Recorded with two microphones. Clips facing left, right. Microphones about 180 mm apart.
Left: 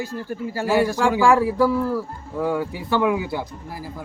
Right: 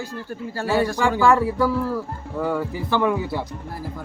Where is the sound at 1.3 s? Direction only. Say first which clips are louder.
Left 1 dB; centre (ahead or behind).